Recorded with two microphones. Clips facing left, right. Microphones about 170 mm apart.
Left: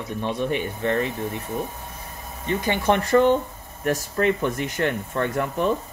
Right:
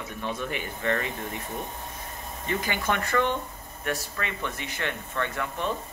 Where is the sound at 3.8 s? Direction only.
40° left (ahead or behind).